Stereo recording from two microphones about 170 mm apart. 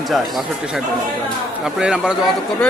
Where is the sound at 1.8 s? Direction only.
5° right (ahead or behind).